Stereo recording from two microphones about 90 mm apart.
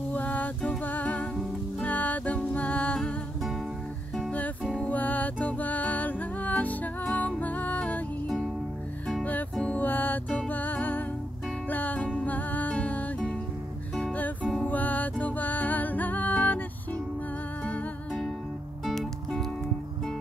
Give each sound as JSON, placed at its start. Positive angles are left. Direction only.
{"t": 0.1, "sound": "music", "side_deg": 20}
{"t": 4.7, "sound": "music", "side_deg": 15}
{"t": 9.6, "sound": "music", "side_deg": 15}
{"t": 18.9, "sound": "music", "side_deg": 5}